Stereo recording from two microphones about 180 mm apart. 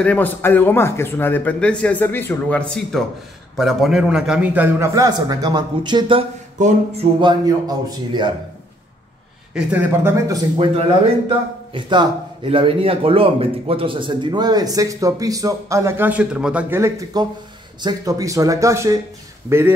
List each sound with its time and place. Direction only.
0.0 s a man's voice: 10° left (ahead or behind); by 8.3 s 25° right (ahead or behind)
9.5 s a man's voice: 10° right (ahead or behind)